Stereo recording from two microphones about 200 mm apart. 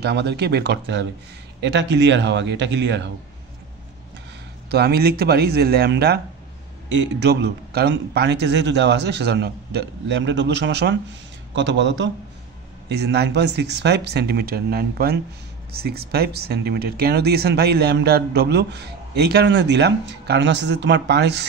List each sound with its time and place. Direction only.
0.0 s speech: 60° right (ahead or behind)
4.6 s speech: 55° right (ahead or behind)